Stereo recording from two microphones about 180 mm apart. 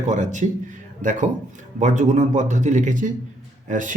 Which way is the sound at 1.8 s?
40° right (ahead or behind).